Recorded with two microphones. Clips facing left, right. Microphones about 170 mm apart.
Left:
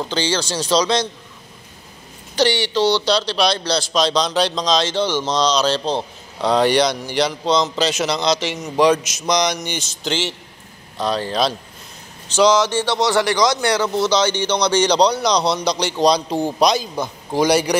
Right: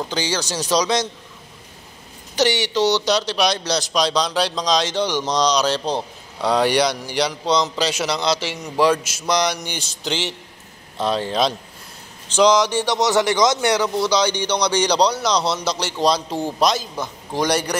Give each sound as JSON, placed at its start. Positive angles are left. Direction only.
{"t": 0.1, "sound": "speech", "side_deg": -15}
{"t": 2.3, "sound": "speech", "side_deg": -15}
{"t": 8.7, "sound": "a man's voice", "side_deg": 15}
{"t": 9.7, "sound": "speech", "side_deg": -10}